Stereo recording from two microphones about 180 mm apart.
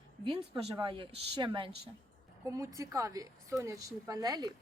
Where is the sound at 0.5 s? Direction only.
30° right (ahead or behind).